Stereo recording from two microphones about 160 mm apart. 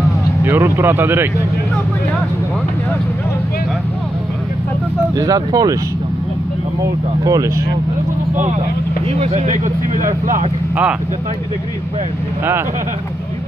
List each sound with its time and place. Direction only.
0.5 s speech: 15° right (ahead or behind)
5.1 s speech: 20° right (ahead or behind)
7.2 s speech: 20° right (ahead or behind)
9.2 s speech: 45° right (ahead or behind)